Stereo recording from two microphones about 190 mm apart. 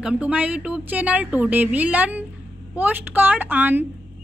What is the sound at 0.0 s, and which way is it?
A woman's voice, 5° right (ahead or behind).